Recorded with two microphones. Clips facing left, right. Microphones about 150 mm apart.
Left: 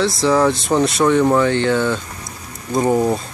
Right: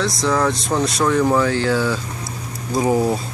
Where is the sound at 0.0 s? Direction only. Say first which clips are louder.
Left 4 dB; centre (ahead or behind).